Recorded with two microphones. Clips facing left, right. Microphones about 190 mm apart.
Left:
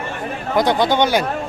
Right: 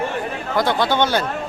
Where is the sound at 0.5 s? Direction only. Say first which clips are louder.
Left 3 dB; 15° left (ahead or behind).